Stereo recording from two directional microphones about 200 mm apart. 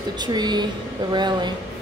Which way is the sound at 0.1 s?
20° right (ahead or behind).